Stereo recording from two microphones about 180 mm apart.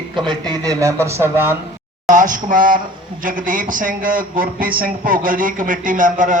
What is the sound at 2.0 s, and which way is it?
A man's voice, 45° right (ahead or behind).